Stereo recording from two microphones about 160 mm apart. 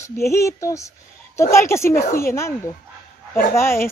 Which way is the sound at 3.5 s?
15° left (ahead or behind).